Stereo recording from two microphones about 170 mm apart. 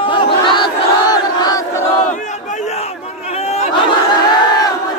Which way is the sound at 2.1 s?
45° left (ahead or behind).